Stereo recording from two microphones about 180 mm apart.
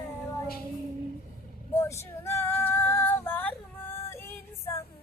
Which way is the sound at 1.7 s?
15° left (ahead or behind).